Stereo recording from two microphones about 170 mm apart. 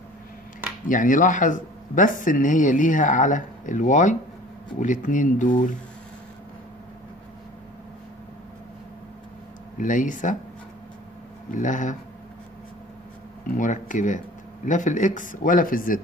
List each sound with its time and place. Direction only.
0.8 s speech: 50° left (ahead or behind)
9.8 s speech: 50° left (ahead or behind)
11.5 s speech: 50° left (ahead or behind)
13.6 s speech: 50° left (ahead or behind)